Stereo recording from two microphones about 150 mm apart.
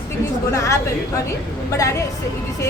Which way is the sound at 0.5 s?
20° left (ahead or behind).